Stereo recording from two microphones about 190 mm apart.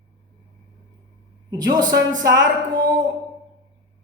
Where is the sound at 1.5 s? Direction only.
20° right (ahead or behind).